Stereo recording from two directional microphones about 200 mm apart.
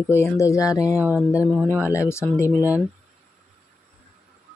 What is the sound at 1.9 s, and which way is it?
Speech, 15° left (ahead or behind).